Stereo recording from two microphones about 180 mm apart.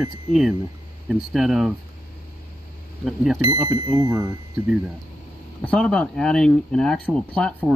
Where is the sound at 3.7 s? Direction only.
20° right (ahead or behind).